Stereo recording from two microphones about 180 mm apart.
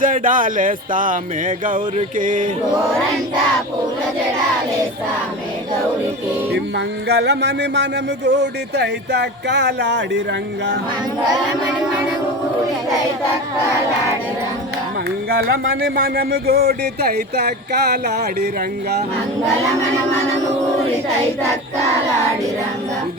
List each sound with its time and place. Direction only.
0.0 s music: 50° right (ahead or behind)
6.5 s speech: 65° right (ahead or behind)
15.3 s speech: 60° right (ahead or behind)